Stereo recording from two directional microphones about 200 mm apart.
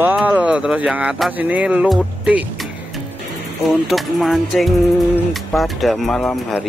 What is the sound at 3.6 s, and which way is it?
Speech, centre (ahead or behind).